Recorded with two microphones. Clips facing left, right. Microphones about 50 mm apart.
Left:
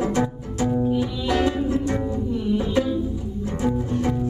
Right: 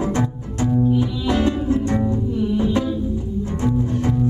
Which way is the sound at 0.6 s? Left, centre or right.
Centre.